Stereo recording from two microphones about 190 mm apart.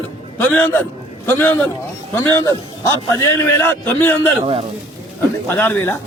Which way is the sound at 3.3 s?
15° left (ahead or behind).